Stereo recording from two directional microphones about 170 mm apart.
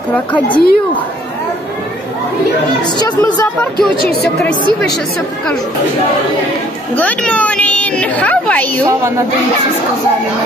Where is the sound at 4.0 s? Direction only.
65° left (ahead or behind).